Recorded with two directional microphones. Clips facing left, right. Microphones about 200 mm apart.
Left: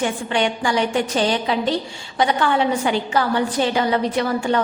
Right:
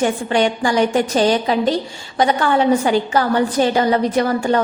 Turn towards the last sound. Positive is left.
turn(degrees=-45)  # may be behind; listen again after turning